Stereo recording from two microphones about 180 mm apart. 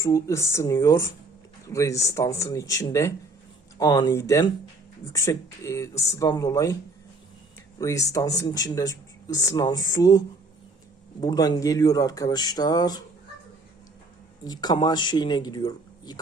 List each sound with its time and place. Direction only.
0.0 s speech: 15° left (ahead or behind)
7.8 s speech: 20° left (ahead or behind)
14.4 s speech: 20° left (ahead or behind)